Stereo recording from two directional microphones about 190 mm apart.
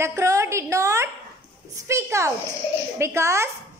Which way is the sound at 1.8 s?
15° right (ahead or behind).